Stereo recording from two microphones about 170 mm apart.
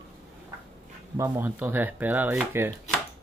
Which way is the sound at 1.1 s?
15° right (ahead or behind).